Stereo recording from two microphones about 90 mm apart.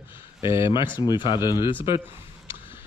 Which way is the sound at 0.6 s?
65° left (ahead or behind).